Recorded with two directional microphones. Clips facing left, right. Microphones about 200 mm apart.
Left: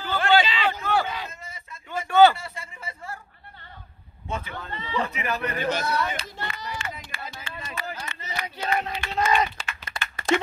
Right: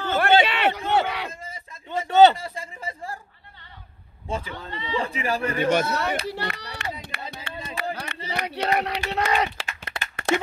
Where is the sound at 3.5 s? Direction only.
50° left (ahead or behind).